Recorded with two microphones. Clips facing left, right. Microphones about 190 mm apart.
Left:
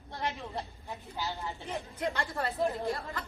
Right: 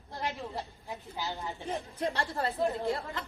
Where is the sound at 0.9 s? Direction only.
20° right (ahead or behind).